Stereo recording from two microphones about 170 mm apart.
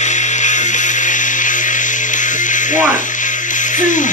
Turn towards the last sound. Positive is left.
turn(degrees=50)  # may be behind; listen again after turning